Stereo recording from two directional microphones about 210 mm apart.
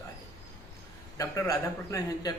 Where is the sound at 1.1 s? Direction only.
15° left (ahead or behind).